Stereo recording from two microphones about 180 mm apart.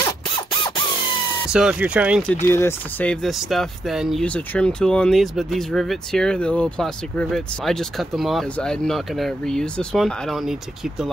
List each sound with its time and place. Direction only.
1.5 s speech: 5° right (ahead or behind)
2.2 s speech: 15° left (ahead or behind)